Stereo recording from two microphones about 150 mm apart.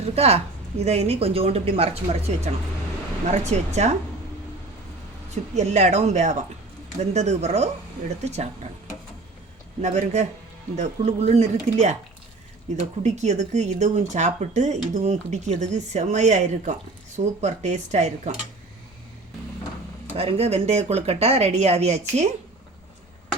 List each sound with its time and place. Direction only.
0.0 s speech: 45° right (ahead or behind)
5.3 s speech: 50° right (ahead or behind)
9.8 s speech: 50° right (ahead or behind)
13.0 s speech: 50° right (ahead or behind)
20.1 s speech: 45° right (ahead or behind)